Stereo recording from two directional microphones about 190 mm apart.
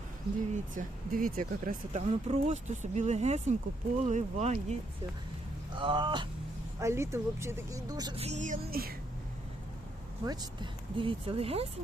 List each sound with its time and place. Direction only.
0.5 s speech: 45° right (ahead or behind)
5.7 s a woman's voice: 25° right (ahead or behind)
8.1 s speech: 35° right (ahead or behind); by 9.0 s 50° right (ahead or behind)
10.2 s speech: 25° right (ahead or behind)